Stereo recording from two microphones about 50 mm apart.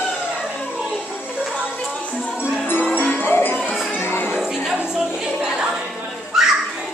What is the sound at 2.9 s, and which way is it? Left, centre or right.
Music, left.